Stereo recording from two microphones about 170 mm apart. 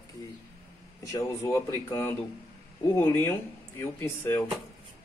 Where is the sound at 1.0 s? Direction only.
20° left (ahead or behind).